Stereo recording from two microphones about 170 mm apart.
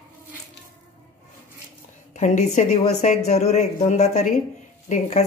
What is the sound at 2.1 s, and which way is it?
Speech, 45° left (ahead or behind).